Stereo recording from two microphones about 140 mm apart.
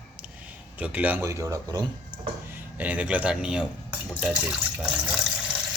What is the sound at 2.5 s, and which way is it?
A man's voice, 10° right (ahead or behind).